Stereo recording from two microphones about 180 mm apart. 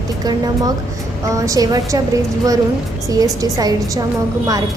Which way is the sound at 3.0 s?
20° right (ahead or behind).